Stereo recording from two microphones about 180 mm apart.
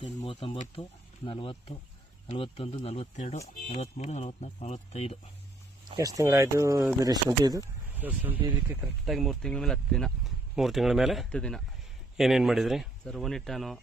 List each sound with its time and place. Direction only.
0.2 s speech: 30° left (ahead or behind)
6.0 s speech: 20° right (ahead or behind)
7.9 s speech: 10° right (ahead or behind)